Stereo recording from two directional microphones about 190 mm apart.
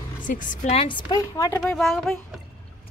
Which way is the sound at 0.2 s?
45° left (ahead or behind).